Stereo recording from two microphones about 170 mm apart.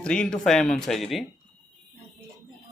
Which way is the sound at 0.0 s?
5° left (ahead or behind).